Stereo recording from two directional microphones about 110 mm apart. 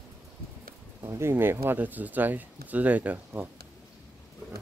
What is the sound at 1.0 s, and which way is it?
Speech, 25° right (ahead or behind).